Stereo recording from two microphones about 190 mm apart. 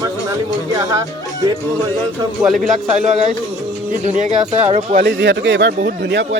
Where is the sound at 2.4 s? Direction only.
Centre (ahead or behind).